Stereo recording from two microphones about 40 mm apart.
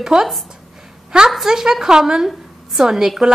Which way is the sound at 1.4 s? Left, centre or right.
Centre.